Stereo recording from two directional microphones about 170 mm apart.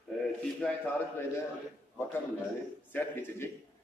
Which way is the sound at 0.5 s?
10° left (ahead or behind).